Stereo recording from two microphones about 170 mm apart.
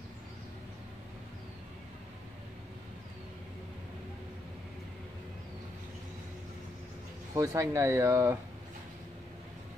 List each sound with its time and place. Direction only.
7.3 s speech: 20° right (ahead or behind)